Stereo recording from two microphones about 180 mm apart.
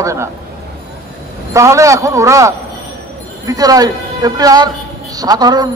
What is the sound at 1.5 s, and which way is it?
A man's voice, 15° right (ahead or behind).